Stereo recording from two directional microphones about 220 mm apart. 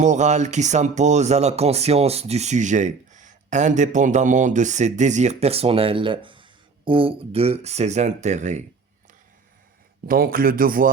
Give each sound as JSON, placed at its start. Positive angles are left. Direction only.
{"t": 0.0, "sound": "speech", "side_deg": -30}
{"t": 10.1, "sound": "speech", "side_deg": -40}